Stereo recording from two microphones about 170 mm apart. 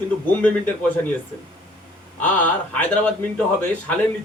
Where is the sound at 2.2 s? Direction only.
10° left (ahead or behind).